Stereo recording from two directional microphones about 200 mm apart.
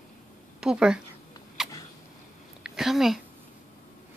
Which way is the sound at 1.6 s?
Centre (ahead or behind).